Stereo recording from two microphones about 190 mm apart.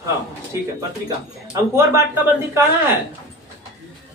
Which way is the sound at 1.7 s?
15° right (ahead or behind).